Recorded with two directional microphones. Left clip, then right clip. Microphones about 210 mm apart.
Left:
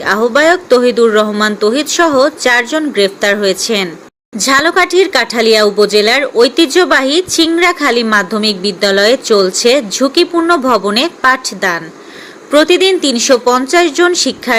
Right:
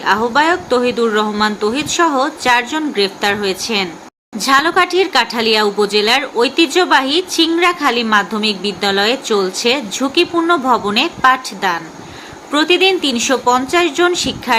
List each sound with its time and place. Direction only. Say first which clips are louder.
0.0 s speech: left 3 dB; 15° left (ahead or behind)